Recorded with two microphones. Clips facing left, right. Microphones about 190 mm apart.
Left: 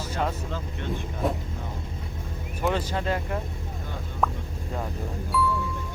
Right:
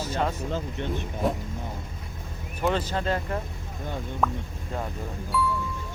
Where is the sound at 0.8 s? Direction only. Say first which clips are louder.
Left 1 dB; 20° right (ahead or behind).